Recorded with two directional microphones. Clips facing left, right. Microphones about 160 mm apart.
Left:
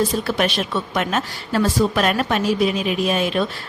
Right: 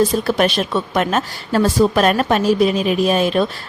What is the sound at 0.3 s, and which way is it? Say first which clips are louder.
A woman's voice: right 4 dB; 40° right (ahead or behind).